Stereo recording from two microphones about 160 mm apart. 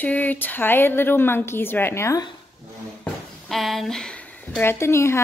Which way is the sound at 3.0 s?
Centre (ahead or behind).